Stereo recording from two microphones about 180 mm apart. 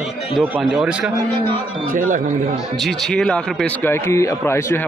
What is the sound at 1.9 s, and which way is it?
Speech, 45° right (ahead or behind).